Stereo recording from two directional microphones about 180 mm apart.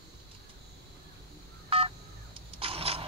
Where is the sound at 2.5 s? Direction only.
30° right (ahead or behind).